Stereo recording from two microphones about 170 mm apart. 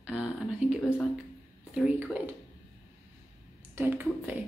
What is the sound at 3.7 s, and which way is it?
Speech, 10° right (ahead or behind).